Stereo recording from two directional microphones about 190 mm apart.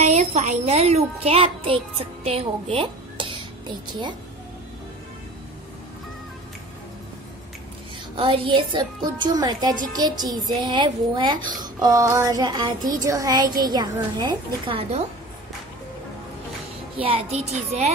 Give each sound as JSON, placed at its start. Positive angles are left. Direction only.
{"t": 0.0, "sound": "a child's voice", "side_deg": -35}
{"t": 8.2, "sound": "a child's voice", "side_deg": -25}
{"t": 17.0, "sound": "a child's voice", "side_deg": -30}